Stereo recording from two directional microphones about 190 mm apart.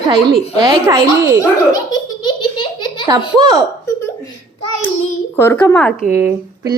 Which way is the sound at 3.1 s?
20° right (ahead or behind).